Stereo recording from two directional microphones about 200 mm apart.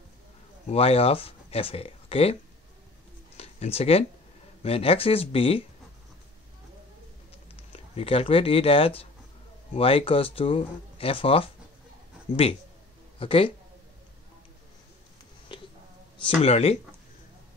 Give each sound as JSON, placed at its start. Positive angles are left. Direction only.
{"t": 0.7, "sound": "speech", "side_deg": 30}
{"t": 3.3, "sound": "a sound", "side_deg": 30}
{"t": 4.6, "sound": "speech", "side_deg": 30}
{"t": 7.7, "sound": "speech", "side_deg": 30}
{"t": 13.2, "sound": "speech", "side_deg": 25}
{"t": 15.5, "sound": "a sound", "side_deg": 25}
{"t": 16.2, "sound": "speech", "side_deg": 30}